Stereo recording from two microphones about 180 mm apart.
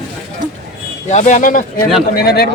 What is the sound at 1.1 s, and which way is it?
Speech, 40° left (ahead or behind).